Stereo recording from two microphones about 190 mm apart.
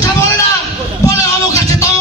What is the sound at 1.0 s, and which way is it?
Music, 15° left (ahead or behind).